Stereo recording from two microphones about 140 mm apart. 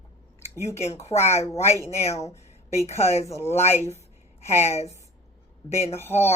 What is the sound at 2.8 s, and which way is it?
Speech, 50° left (ahead or behind).